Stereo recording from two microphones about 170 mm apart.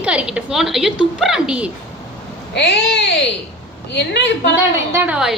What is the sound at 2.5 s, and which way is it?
Speech, 90° left.